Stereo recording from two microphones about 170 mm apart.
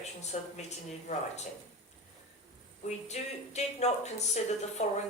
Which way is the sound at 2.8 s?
40° left (ahead or behind).